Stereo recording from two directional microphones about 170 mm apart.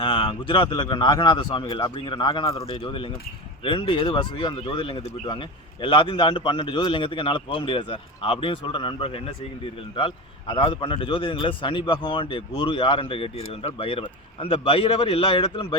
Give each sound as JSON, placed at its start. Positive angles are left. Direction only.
{"t": 0.0, "sound": "a man's voice", "side_deg": 30}